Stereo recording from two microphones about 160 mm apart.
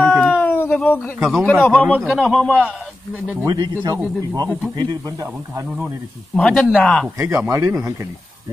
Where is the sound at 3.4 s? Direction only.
25° right (ahead or behind).